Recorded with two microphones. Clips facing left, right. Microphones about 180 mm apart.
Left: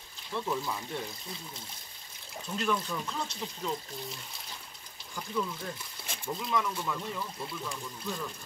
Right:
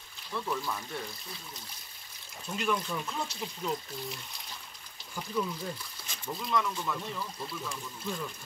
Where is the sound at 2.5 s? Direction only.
Centre (ahead or behind).